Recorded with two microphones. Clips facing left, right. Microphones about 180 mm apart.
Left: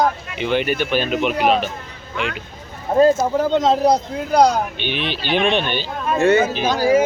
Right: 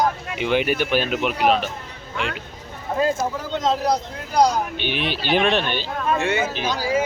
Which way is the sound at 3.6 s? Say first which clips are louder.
Left 5 dB; 60° left (ahead or behind).